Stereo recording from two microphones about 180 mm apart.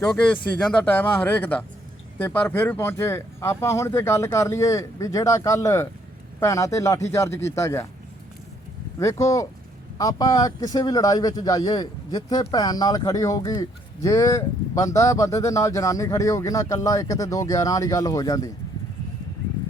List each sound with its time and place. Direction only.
0.3 s speech: 10° left (ahead or behind)
9.0 s speech: 15° left (ahead or behind)